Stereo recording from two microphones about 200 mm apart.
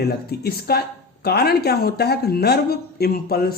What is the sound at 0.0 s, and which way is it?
Speech, 50° left (ahead or behind).